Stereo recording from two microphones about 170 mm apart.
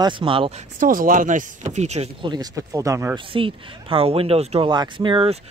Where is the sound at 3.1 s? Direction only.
30° right (ahead or behind).